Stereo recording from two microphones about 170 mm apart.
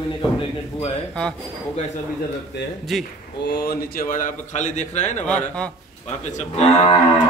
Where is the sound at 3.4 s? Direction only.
70° left (ahead or behind); by 5.3 s 40° left (ahead or behind).